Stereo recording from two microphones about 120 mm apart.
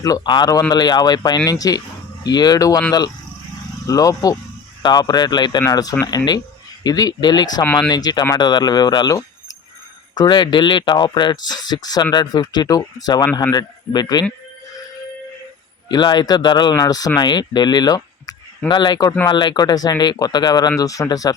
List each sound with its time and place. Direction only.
0.0 s speech: 35° left (ahead or behind)
3.8 s speech: 30° left (ahead or behind)
7.6 s speech: 10° left (ahead or behind)
7.9 s speech: 35° left (ahead or behind)
15.9 s speech: 35° left (ahead or behind)